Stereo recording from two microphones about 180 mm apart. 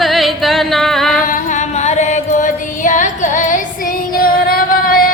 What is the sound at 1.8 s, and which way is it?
Music, 40° left (ahead or behind).